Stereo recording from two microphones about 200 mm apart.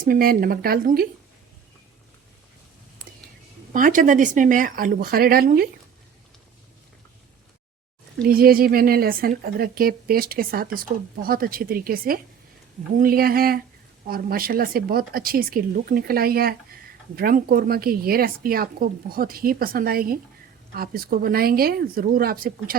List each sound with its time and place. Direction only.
0.0 s speech: 45° right (ahead or behind)
3.7 s speech: 40° right (ahead or behind)
8.2 s speech: 50° right (ahead or behind)